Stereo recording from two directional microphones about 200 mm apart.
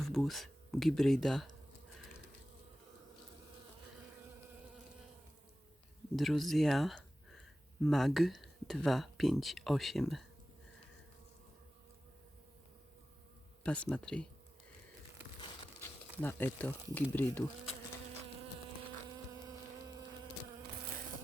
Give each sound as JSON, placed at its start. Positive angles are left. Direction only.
{"t": 0.0, "sound": "speech", "side_deg": 0}
{"t": 6.1, "sound": "speech", "side_deg": 0}
{"t": 13.7, "sound": "speech", "side_deg": 5}
{"t": 16.2, "sound": "speech", "side_deg": 10}
{"t": 19.1, "sound": "insect", "side_deg": -15}